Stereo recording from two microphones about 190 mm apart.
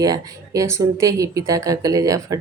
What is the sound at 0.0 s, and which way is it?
Speech, 20° right (ahead or behind).